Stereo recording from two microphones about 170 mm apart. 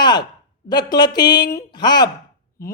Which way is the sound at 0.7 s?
25° left (ahead or behind).